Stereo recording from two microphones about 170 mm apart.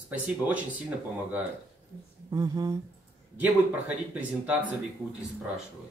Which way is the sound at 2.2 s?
25° right (ahead or behind).